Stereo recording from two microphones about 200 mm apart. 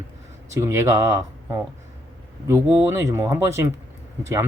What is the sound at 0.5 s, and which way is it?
Speech, 15° right (ahead or behind).